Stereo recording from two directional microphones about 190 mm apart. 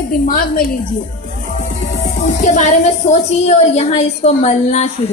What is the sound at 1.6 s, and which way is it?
Music, 40° left (ahead or behind).